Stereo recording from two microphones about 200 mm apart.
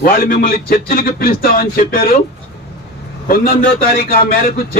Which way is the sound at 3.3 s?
45° left (ahead or behind).